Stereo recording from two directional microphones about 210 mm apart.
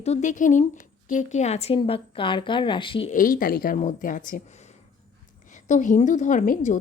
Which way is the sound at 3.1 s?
40° left (ahead or behind).